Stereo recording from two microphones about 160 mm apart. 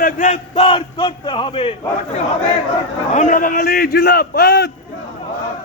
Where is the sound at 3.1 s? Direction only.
50° left (ahead or behind); by 4.7 s 90° left.